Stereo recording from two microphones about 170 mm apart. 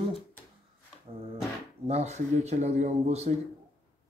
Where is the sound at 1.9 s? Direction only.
40° right (ahead or behind).